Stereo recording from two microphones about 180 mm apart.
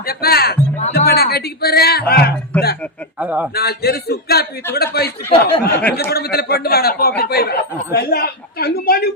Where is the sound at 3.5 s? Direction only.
60° left (ahead or behind).